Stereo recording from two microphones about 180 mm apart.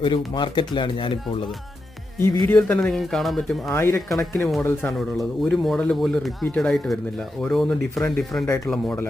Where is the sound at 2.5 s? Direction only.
10° left (ahead or behind).